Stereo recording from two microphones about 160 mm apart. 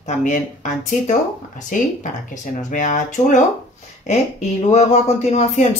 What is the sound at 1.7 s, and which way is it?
Speech, 55° left (ahead or behind).